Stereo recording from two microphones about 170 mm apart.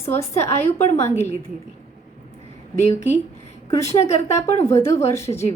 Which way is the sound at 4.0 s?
40° left (ahead or behind).